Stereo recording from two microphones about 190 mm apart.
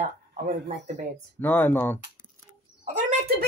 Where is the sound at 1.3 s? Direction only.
10° left (ahead or behind).